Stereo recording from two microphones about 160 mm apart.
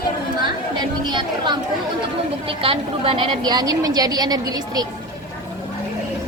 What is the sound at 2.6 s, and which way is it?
A woman's voice, 35° right (ahead or behind).